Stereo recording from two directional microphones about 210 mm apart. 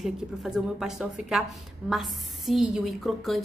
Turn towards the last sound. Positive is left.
turn(degrees=0)  # may be behind; listen again after turning